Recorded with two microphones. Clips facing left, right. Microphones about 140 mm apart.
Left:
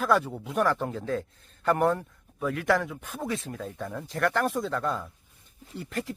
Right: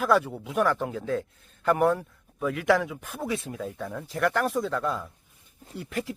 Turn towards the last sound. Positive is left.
turn(degrees=0)  # may be behind; listen again after turning